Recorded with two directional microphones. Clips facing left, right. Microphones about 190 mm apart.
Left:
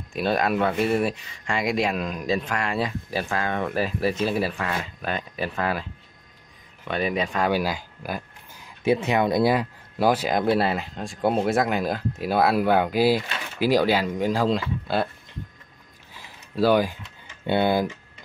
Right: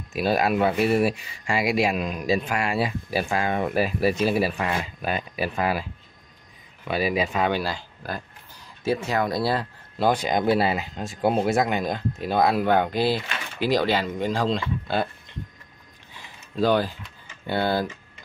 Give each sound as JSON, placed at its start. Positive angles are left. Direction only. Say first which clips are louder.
{"t": 0.1, "sound": "a man's voice", "louder": "right 1 dB", "side_deg": -5}
{"t": 7.5, "sound": "speech", "louder": "left 2 dB", "side_deg": 10}
{"t": 16.5, "sound": "speech", "louder": "left 2 dB", "side_deg": 10}